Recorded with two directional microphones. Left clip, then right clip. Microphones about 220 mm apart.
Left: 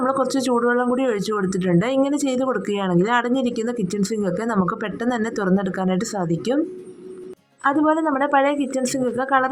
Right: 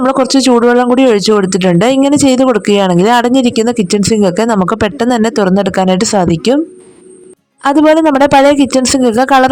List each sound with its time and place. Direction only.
0.0 s speech: 45° right (ahead or behind)
7.6 s speech: 50° right (ahead or behind)